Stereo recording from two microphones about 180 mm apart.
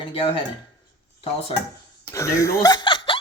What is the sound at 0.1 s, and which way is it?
Speech, 30° left (ahead or behind).